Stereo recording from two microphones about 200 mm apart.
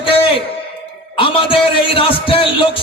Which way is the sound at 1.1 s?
25° left (ahead or behind).